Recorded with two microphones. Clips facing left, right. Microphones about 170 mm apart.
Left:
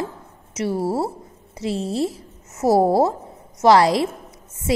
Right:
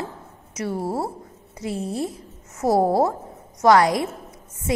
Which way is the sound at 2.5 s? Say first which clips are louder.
Left 3 dB; 25° left (ahead or behind).